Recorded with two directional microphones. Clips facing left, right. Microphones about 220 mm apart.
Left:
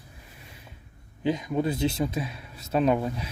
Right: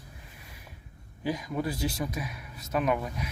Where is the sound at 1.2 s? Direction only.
20° left (ahead or behind).